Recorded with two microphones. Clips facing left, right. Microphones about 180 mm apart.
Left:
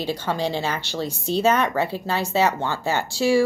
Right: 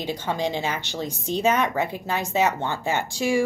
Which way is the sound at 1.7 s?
35° left (ahead or behind).